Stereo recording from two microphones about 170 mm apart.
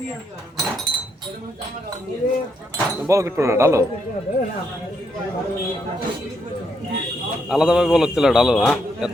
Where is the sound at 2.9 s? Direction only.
15° right (ahead or behind).